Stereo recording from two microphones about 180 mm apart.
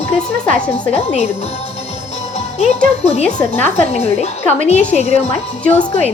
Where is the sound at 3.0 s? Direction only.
35° left (ahead or behind).